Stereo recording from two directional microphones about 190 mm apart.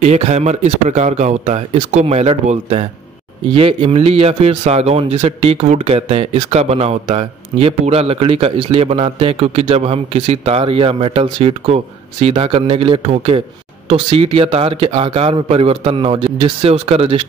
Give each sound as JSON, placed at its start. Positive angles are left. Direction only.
{"t": 0.0, "sound": "a man's voice", "side_deg": -35}